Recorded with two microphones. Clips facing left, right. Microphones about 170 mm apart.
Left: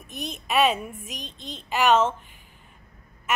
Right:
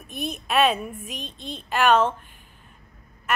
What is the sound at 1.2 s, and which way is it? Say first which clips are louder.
Speech: right 3 dB; 15° left (ahead or behind).